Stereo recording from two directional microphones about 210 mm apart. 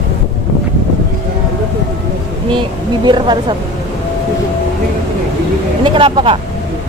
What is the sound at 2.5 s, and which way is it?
Speech, 20° right (ahead or behind).